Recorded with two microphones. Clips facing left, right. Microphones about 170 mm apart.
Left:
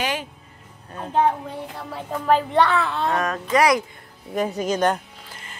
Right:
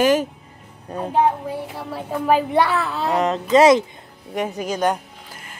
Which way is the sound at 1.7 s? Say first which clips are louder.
Right 3 dB; 5° right (ahead or behind).